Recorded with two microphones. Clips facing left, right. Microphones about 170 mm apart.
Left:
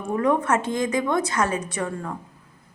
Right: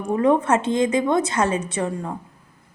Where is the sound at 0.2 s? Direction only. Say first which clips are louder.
Right 3 dB; 25° right (ahead or behind).